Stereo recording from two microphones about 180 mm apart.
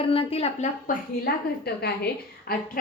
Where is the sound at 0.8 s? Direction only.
60° left (ahead or behind).